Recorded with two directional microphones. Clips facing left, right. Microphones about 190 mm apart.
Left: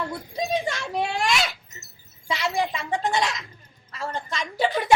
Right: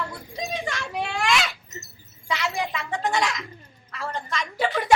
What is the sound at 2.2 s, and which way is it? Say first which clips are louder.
A woman's voice: left 2 dB; 30° left (ahead or behind).